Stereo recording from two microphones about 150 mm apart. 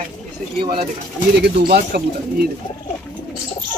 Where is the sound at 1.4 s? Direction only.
90° right.